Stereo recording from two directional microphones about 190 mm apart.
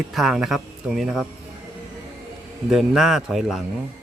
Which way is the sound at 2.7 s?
Centre (ahead or behind).